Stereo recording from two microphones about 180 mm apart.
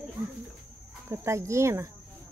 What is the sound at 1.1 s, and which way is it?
Speech, 15° right (ahead or behind).